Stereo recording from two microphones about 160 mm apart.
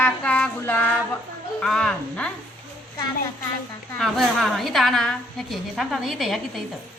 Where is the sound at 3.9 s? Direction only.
Centre (ahead or behind).